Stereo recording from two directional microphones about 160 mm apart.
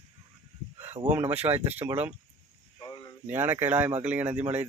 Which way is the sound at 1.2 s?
40° right (ahead or behind).